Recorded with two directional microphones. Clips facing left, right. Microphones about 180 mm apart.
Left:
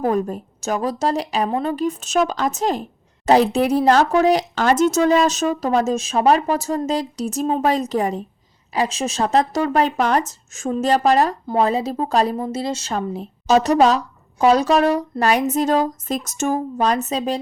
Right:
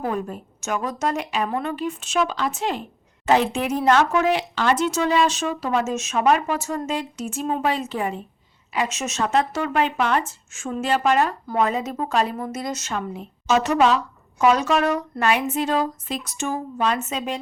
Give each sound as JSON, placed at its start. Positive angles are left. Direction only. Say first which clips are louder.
{"t": 0.0, "sound": "speech", "louder": "left 6 dB", "side_deg": 40}